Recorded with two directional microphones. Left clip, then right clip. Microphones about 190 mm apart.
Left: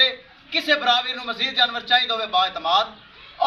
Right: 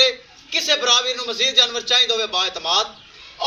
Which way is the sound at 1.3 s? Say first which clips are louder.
Right 3 dB; 15° right (ahead or behind).